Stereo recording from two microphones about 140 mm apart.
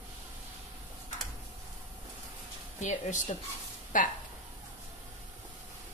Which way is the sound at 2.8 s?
60° left (ahead or behind).